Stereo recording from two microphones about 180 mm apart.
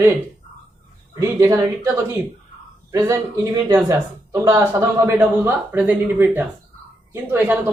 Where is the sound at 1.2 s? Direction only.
15° right (ahead or behind).